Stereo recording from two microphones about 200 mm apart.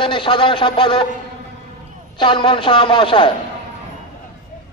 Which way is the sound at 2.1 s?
25° left (ahead or behind).